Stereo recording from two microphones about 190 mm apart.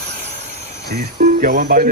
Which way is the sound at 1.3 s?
50° right (ahead or behind).